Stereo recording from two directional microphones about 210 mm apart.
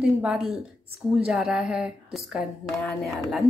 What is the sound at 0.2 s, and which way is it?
Speech, centre (ahead or behind).